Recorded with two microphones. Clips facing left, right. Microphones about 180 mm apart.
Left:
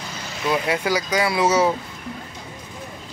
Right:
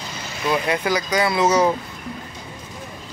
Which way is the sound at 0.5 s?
10° left (ahead or behind).